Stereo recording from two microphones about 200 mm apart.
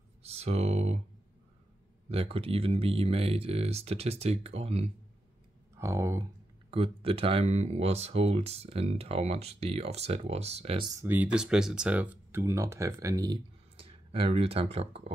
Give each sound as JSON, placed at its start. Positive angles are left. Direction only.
{"t": 0.2, "sound": "speech", "side_deg": -30}
{"t": 2.0, "sound": "speech", "side_deg": -30}
{"t": 5.8, "sound": "speech", "side_deg": -15}
{"t": 6.7, "sound": "speech", "side_deg": -25}
{"t": 11.0, "sound": "speech", "side_deg": -10}